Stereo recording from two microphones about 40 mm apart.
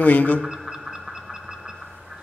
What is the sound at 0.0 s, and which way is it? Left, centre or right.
Speech, left.